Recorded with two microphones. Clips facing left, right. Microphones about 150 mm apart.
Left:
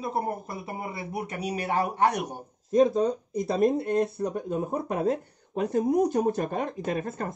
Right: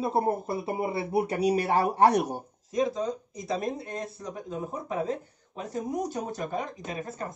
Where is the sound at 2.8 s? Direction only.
60° left (ahead or behind).